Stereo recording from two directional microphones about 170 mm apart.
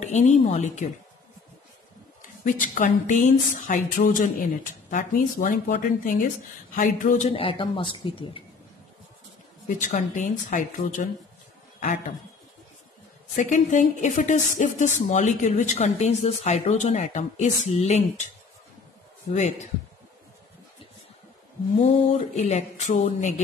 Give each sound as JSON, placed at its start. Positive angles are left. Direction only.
{"t": 0.0, "sound": "speech", "side_deg": 45}
{"t": 2.4, "sound": "speech", "side_deg": 50}
{"t": 9.7, "sound": "speech", "side_deg": 50}
{"t": 13.4, "sound": "speech", "side_deg": 50}
{"t": 21.7, "sound": "speech", "side_deg": 40}